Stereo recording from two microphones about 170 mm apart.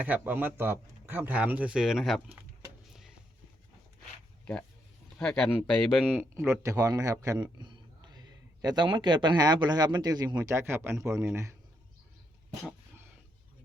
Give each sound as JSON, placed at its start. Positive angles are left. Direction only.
{"t": 0.0, "sound": "speech", "side_deg": -10}
{"t": 5.1, "sound": "speech", "side_deg": 5}
{"t": 6.3, "sound": "a man's voice", "side_deg": -15}